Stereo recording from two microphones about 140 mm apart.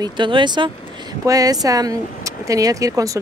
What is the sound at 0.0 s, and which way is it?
Speech, 35° right (ahead or behind).